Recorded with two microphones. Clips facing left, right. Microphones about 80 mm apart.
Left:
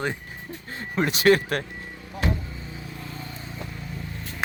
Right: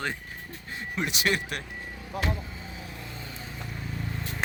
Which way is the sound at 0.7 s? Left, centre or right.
Left.